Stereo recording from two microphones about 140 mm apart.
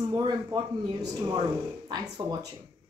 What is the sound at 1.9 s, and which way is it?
Speech, 30° right (ahead or behind).